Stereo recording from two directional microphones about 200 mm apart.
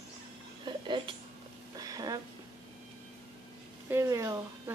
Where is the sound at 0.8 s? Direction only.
25° right (ahead or behind).